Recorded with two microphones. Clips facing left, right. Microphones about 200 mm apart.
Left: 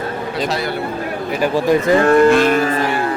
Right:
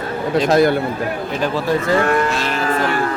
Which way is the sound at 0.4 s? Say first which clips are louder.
Right 9 dB; 50° right (ahead or behind).